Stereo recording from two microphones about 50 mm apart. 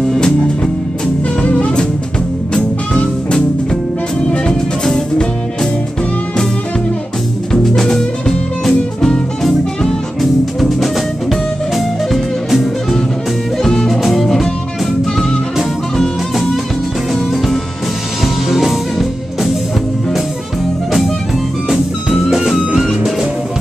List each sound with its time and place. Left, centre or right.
1.4 s music: left
2.5 s music: centre
4.8 s music: centre
7.7 s music: centre
10.6 s music: centre
18.2 s music: centre
21.6 s music: centre